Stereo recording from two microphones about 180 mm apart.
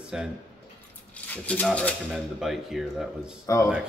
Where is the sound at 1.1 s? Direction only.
10° left (ahead or behind).